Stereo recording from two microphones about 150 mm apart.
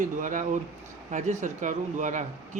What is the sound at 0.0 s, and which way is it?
Speech, 60° right (ahead or behind).